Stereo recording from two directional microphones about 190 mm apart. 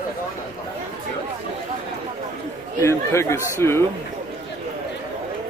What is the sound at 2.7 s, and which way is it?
Speech, 15° left (ahead or behind).